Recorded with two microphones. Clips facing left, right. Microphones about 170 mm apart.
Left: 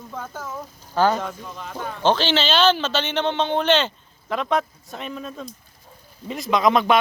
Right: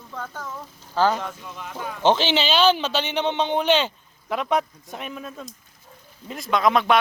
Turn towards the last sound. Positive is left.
turn(degrees=0)  # may be behind; listen again after turning